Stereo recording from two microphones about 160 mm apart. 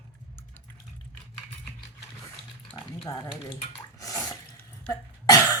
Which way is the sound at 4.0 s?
20° left (ahead or behind).